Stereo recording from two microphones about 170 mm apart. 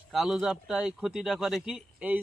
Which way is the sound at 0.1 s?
Centre (ahead or behind).